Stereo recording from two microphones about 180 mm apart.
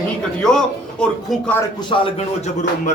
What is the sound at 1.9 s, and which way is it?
Speech, 35° left (ahead or behind).